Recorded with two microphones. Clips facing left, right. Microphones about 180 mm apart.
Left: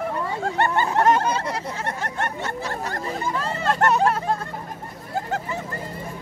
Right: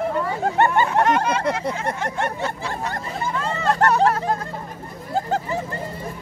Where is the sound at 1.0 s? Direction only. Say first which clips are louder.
Left 1 dB; 35° left (ahead or behind).